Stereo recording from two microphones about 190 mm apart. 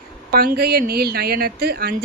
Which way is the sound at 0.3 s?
55° right (ahead or behind).